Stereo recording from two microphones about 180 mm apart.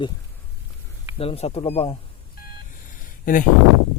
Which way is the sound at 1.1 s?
35° left (ahead or behind).